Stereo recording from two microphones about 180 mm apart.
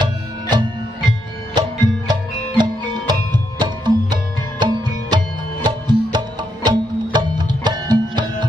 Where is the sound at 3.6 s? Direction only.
25° right (ahead or behind).